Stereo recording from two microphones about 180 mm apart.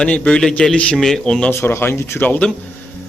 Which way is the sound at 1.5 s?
15° left (ahead or behind).